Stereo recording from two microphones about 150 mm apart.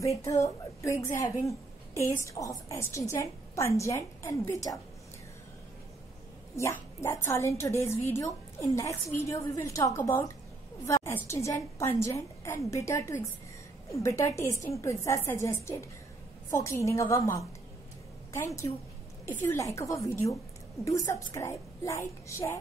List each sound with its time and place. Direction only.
0.0 s a woman's voice: 20° left (ahead or behind)
6.5 s a woman's voice: 20° left (ahead or behind)